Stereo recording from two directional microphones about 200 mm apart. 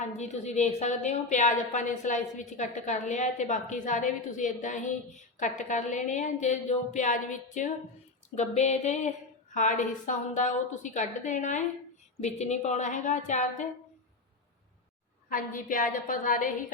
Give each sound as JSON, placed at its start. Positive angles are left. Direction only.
{"t": 0.0, "sound": "a woman's voice", "side_deg": 35}
{"t": 15.3, "sound": "a woman's voice", "side_deg": 40}